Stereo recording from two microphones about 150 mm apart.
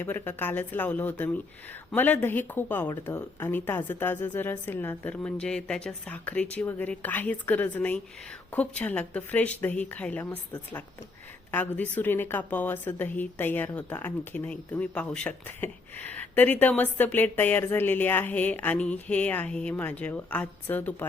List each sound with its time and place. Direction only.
0.0 s a woman's voice: 15° left (ahead or behind)